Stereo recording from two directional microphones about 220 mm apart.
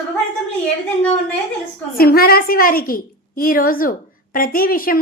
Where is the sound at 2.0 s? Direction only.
45° left (ahead or behind).